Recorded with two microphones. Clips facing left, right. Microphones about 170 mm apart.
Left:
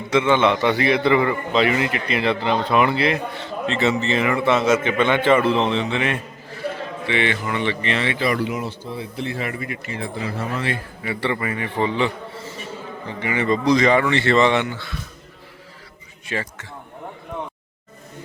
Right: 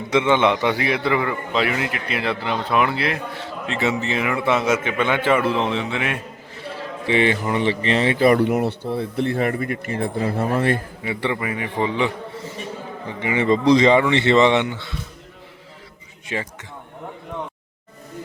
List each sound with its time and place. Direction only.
0.1 s a man's voice: 15° right (ahead or behind)
7.0 s a man's voice: 35° right (ahead or behind)
11.0 s a man's voice: 20° right (ahead or behind)
16.2 s a man's voice: 15° right (ahead or behind)